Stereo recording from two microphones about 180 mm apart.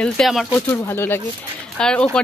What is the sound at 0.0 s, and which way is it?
Speech, centre (ahead or behind).